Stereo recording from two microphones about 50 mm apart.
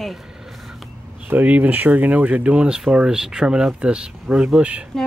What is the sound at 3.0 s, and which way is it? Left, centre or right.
Speech, centre.